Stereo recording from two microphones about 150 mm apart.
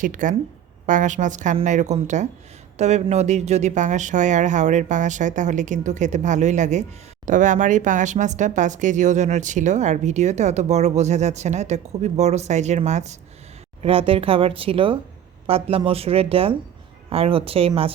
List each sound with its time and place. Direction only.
0.0 s a woman's voice: 60° right (ahead or behind)
13.8 s a woman's voice: 40° right (ahead or behind)